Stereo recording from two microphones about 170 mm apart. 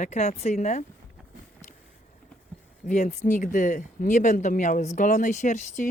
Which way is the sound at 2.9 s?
45° left (ahead or behind).